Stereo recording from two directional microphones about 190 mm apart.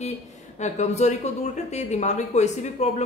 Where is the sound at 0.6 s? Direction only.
35° left (ahead or behind).